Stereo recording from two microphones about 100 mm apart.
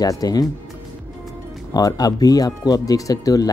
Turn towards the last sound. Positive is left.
turn(degrees=40)  # may be behind; listen again after turning